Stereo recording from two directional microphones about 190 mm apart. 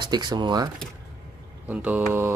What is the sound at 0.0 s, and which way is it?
Speech, 20° right (ahead or behind).